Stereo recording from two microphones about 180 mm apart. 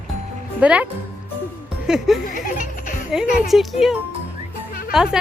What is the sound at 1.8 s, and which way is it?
Speech, 5° right (ahead or behind).